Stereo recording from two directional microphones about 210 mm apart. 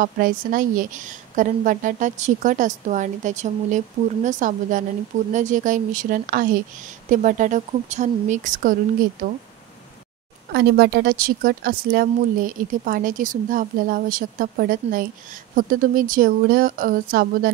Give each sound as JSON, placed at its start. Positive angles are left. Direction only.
{"t": 0.0, "sound": "a woman's voice", "side_deg": -40}
{"t": 10.5, "sound": "a woman's voice", "side_deg": -50}